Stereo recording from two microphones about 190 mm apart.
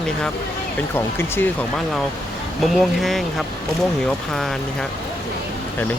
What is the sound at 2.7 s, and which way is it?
Speech, centre (ahead or behind).